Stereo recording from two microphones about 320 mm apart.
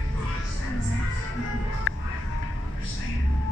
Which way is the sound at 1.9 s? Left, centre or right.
Left.